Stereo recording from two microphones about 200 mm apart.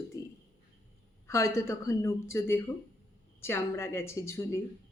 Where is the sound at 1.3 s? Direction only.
15° left (ahead or behind).